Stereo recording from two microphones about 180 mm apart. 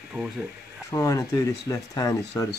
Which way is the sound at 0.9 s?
15° left (ahead or behind).